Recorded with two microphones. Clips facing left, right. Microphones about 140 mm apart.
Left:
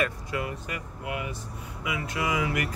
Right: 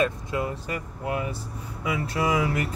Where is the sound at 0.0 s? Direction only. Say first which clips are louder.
Right 4 dB; 25° right (ahead or behind).